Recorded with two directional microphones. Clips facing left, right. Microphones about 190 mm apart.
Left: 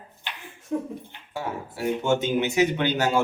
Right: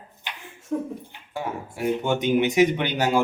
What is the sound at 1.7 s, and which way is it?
Speech, 15° right (ahead or behind).